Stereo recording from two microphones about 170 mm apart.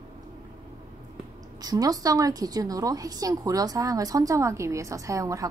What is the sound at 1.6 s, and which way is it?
A woman's voice, 20° right (ahead or behind).